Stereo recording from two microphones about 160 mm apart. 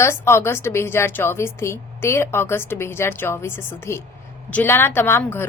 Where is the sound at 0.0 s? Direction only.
15° left (ahead or behind).